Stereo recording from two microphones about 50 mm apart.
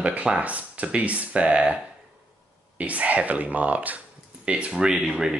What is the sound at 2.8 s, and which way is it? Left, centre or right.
Speech, right.